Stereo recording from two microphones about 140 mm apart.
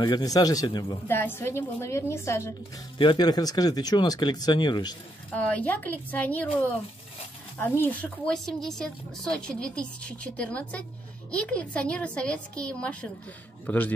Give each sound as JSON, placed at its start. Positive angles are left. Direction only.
{"t": 0.0, "sound": "a woman's voice", "side_deg": 30}
{"t": 1.0, "sound": "a woman's voice", "side_deg": 15}
{"t": 3.0, "sound": "speech", "side_deg": 35}
{"t": 5.3, "sound": "a woman's voice", "side_deg": 10}
{"t": 8.3, "sound": "a woman's voice", "side_deg": 5}